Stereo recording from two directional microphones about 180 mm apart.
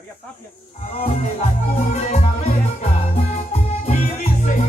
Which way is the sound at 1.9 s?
40° left (ahead or behind).